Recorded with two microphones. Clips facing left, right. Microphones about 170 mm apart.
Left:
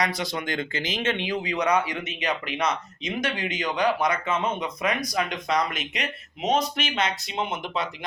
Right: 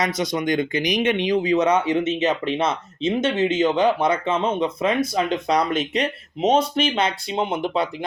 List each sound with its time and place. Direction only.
0.0 s speech: 20° right (ahead or behind)